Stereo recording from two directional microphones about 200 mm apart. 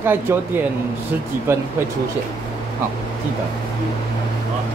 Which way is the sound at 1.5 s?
10° right (ahead or behind).